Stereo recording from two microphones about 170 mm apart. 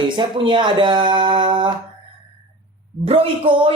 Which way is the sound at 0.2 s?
25° right (ahead or behind).